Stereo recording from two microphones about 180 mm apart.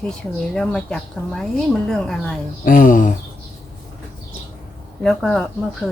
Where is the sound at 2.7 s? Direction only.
45° left (ahead or behind).